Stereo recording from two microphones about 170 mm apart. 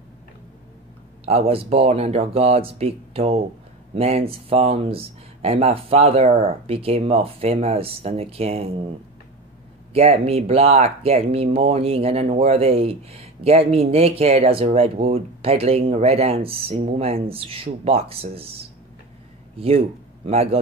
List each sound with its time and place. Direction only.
1.2 s speech: 35° right (ahead or behind)
9.9 s speech: 35° right (ahead or behind)